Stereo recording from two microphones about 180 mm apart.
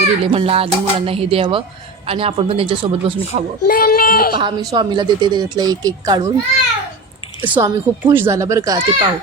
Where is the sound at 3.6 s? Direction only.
55° left (ahead or behind).